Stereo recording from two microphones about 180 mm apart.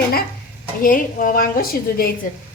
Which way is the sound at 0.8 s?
50° left (ahead or behind).